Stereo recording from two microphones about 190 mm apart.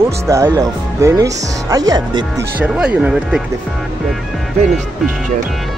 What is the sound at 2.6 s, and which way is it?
Speech, 5° right (ahead or behind).